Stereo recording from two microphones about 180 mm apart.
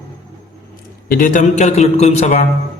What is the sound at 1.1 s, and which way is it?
A man's voice, 50° left (ahead or behind).